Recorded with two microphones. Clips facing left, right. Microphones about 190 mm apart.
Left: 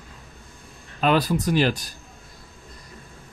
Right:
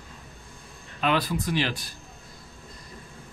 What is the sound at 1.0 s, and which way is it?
Speech, 40° left (ahead or behind).